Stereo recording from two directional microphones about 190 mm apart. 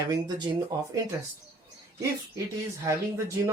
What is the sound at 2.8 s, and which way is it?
Speech, 15° right (ahead or behind).